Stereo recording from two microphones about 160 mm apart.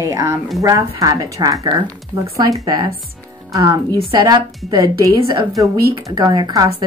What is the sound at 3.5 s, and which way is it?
A woman's voice, 20° right (ahead or behind).